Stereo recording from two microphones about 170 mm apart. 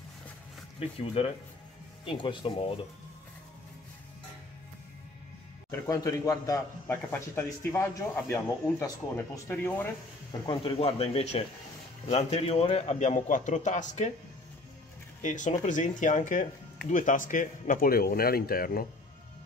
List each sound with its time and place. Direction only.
0.7 s speech: 35° left (ahead or behind)
5.7 s speech: 20° left (ahead or behind)
10.4 s a man's voice: 30° left (ahead or behind); by 14.1 s 45° left (ahead or behind)
15.2 s a man's voice: 45° left (ahead or behind)